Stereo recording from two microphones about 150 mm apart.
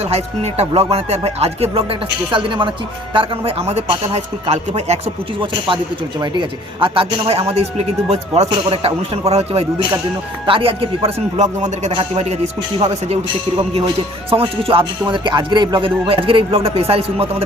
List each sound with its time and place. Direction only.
0.1 s speech: 45° right (ahead or behind)
5.4 s speech: 35° right (ahead or behind)
14.3 s speech: 40° right (ahead or behind)